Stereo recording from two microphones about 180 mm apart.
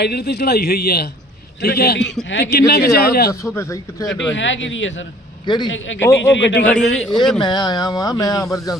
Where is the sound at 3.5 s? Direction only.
15° left (ahead or behind).